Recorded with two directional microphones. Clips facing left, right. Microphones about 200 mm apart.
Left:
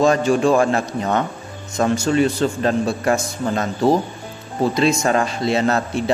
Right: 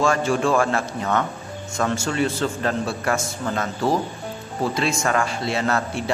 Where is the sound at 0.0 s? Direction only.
20° left (ahead or behind).